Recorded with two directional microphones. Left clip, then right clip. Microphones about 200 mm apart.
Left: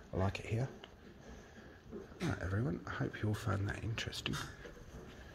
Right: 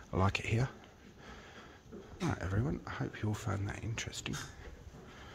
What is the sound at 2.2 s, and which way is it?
Speech, 25° right (ahead or behind).